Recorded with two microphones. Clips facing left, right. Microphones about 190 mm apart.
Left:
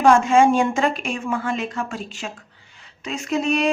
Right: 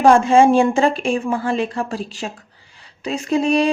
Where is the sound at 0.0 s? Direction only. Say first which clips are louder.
Right 3 dB; 35° right (ahead or behind).